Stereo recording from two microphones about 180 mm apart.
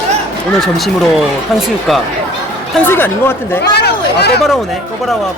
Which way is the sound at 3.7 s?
65° left (ahead or behind).